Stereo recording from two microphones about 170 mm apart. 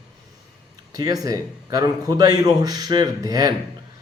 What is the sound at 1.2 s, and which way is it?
A man's voice, 20° right (ahead or behind).